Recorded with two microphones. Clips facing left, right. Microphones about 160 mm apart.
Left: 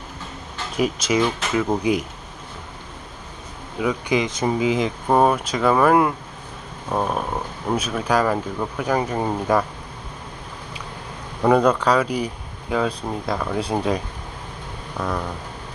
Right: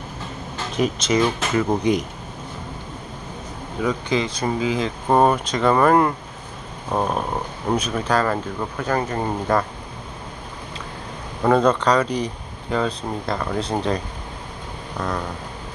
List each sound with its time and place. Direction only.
0.8 s speech: 10° left (ahead or behind)
3.8 s speech: 10° left (ahead or behind)
5.0 s speech: centre (ahead or behind)
11.4 s speech: 10° left (ahead or behind)